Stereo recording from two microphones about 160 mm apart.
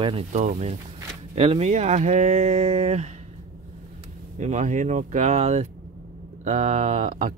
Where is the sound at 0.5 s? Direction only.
45° right (ahead or behind).